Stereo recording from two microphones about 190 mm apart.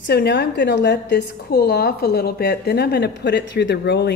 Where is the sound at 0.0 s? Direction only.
60° left (ahead or behind).